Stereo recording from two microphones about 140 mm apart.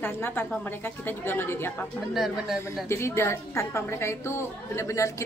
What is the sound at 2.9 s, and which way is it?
A woman's voice, 20° left (ahead or behind).